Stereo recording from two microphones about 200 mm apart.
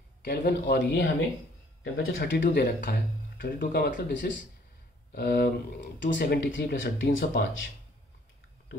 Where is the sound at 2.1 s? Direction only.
55° left (ahead or behind).